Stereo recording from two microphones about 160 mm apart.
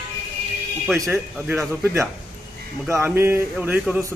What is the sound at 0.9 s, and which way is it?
Speech, 15° right (ahead or behind).